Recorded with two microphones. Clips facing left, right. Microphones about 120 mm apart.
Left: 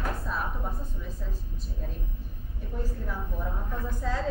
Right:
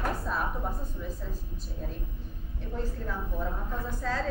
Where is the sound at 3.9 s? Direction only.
15° left (ahead or behind).